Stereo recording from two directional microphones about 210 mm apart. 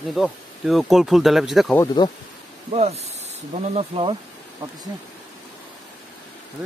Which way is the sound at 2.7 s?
30° right (ahead or behind).